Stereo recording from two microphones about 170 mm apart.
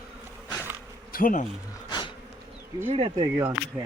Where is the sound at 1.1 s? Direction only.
55° left (ahead or behind).